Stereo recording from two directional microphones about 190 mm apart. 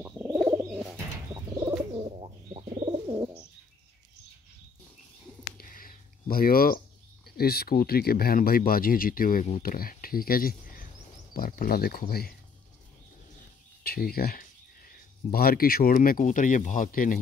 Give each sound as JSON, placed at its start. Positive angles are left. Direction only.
{"t": 0.0, "sound": "bird", "side_deg": -10}
{"t": 2.2, "sound": "bird", "side_deg": -30}
{"t": 5.6, "sound": "a sound", "side_deg": 50}
{"t": 7.2, "sound": "speech", "side_deg": 55}
{"t": 13.8, "sound": "speech", "side_deg": 55}